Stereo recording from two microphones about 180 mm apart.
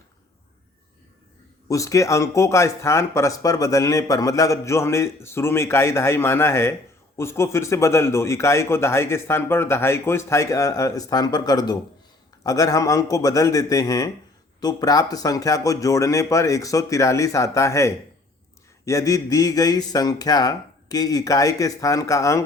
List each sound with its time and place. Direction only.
1.6 s a man's voice: 20° left (ahead or behind)